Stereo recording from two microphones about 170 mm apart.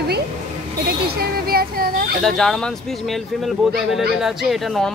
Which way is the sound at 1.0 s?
65° right (ahead or behind).